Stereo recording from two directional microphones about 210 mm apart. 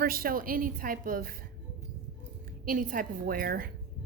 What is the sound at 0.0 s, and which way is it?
A woman's voice, 45° right (ahead or behind).